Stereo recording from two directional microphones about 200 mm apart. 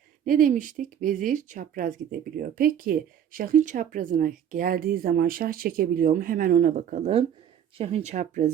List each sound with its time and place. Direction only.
0.3 s speech: 45° right (ahead or behind)